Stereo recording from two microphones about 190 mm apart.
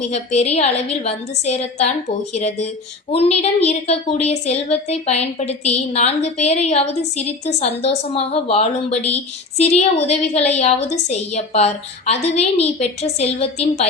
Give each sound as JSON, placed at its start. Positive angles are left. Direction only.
{"t": 0.1, "sound": "a woman's voice", "side_deg": 35}